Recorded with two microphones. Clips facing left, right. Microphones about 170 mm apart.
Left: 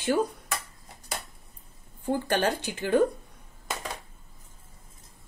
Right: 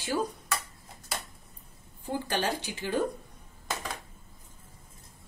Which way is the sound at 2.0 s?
55° left (ahead or behind).